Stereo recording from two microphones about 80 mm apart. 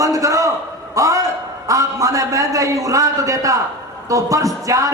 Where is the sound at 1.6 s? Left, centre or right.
Right.